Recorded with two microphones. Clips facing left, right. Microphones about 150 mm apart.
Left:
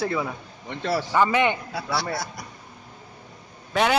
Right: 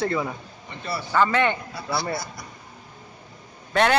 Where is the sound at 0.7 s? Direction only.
90° left.